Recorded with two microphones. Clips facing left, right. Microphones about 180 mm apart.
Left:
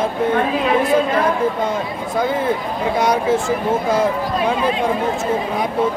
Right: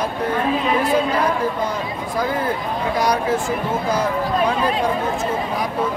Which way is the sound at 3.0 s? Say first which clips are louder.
Left 3 dB; 25° left (ahead or behind).